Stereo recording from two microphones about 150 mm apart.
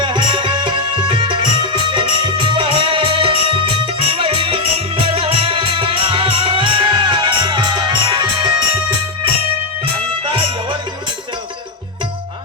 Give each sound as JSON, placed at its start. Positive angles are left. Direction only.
{"t": 0.0, "sound": "music", "side_deg": -30}